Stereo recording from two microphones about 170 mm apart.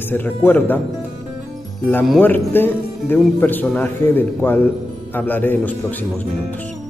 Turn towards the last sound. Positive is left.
turn(degrees=10)  # may be behind; listen again after turning